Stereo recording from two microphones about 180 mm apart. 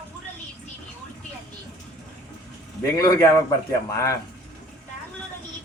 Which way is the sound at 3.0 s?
20° left (ahead or behind).